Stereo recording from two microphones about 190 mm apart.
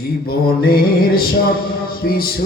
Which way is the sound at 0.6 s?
50° left (ahead or behind).